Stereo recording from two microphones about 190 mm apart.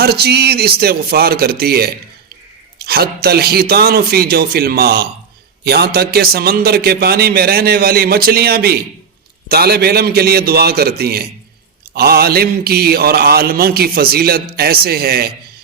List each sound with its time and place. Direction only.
0.0 s speech: 55° right (ahead or behind)
5.6 s mantra: 55° right (ahead or behind)
9.5 s speech: 55° right (ahead or behind)
11.9 s mantra: 55° right (ahead or behind)